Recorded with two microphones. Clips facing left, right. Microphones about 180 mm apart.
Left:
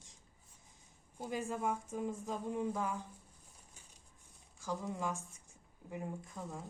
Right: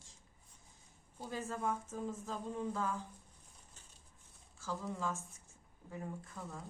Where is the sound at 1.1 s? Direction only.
15° left (ahead or behind).